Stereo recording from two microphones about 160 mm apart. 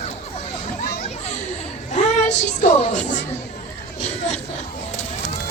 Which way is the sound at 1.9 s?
50° left (ahead or behind).